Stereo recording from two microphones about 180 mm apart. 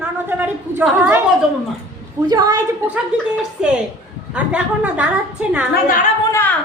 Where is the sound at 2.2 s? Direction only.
20° right (ahead or behind).